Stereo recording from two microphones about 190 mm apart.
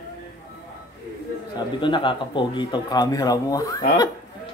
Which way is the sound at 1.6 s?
25° left (ahead or behind).